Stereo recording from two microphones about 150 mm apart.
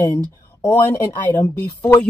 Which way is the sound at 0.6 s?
20° left (ahead or behind).